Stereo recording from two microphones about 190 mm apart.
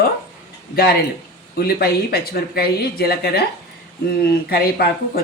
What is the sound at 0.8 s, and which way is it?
Speech, 50° left (ahead or behind).